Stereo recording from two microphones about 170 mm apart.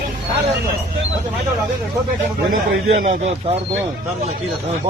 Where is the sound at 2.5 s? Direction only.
50° right (ahead or behind).